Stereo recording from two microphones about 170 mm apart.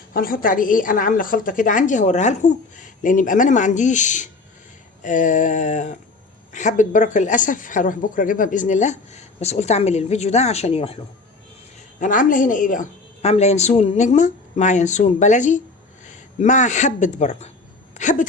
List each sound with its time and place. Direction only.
0.1 s speech: 60° left (ahead or behind); by 11.0 s 35° left (ahead or behind)
11.9 s speech: 50° left (ahead or behind)